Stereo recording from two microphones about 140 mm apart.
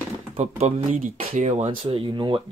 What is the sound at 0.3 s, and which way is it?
Speech, 50° right (ahead or behind).